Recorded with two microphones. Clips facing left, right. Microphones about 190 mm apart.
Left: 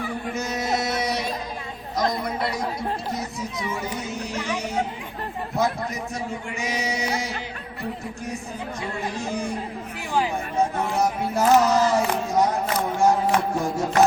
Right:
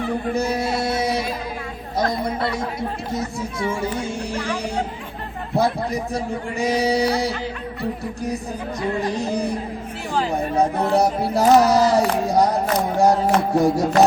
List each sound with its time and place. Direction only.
0.3 s music: 30° right (ahead or behind)
2.0 s chatter: 30° right (ahead or behind)
3.8 s music: 30° right (ahead or behind)
4.4 s speech: 10° left (ahead or behind)
5.5 s speech: 35° right (ahead or behind)
9.0 s speech: 35° right (ahead or behind)